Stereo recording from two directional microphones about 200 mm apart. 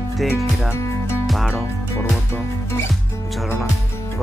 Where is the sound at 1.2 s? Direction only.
Centre (ahead or behind).